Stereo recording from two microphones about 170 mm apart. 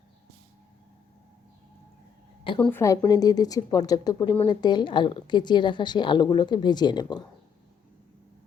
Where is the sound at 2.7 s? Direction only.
15° left (ahead or behind).